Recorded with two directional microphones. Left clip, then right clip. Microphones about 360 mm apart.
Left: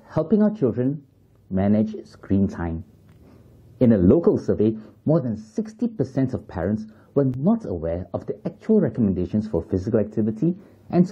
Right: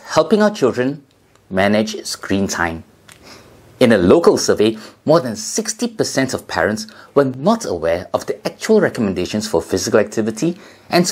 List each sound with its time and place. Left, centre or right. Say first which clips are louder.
0.0 s speech: right 8 dB; centre
5.3 s speech: right 9 dB; centre